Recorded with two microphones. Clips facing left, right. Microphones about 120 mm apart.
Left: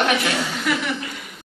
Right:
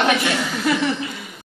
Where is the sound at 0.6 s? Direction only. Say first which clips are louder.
Right 6 dB; 30° right (ahead or behind).